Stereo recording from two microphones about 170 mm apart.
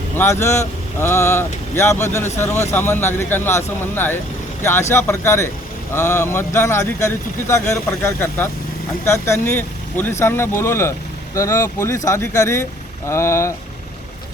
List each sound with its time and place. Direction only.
0.2 s speech: 15° left (ahead or behind)